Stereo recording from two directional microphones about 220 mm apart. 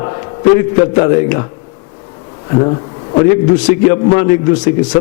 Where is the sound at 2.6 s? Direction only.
20° left (ahead or behind).